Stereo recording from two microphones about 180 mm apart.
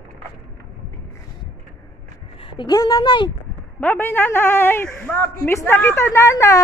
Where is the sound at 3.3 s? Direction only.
10° left (ahead or behind).